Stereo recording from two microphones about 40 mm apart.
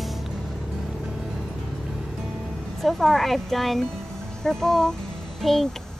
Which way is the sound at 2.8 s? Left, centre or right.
Centre.